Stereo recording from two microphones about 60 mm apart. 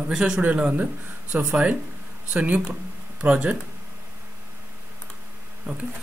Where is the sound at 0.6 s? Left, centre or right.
Right.